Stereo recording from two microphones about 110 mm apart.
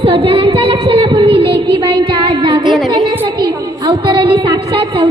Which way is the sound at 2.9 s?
35° right (ahead or behind).